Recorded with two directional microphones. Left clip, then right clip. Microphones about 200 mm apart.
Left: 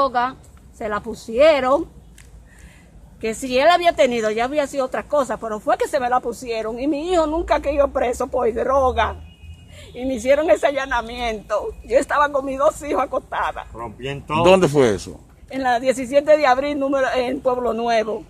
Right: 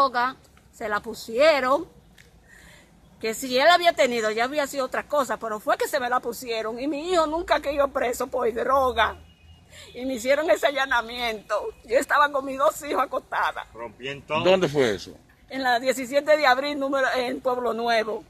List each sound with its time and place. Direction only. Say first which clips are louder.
0.0 s a woman's voice: left 3 dB; centre (ahead or behind)
3.2 s speech: left 4 dB; centre (ahead or behind)
13.7 s speech: left 5 dB; 50° left (ahead or behind)
14.4 s speech: left 7 dB; 5° left (ahead or behind)